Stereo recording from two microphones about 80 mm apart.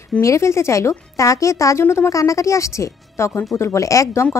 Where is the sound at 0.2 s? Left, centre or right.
Left.